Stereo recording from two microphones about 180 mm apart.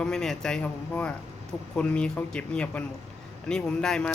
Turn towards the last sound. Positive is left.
turn(degrees=5)  # may be behind; listen again after turning